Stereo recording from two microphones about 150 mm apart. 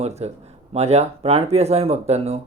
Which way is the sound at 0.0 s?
45° right (ahead or behind).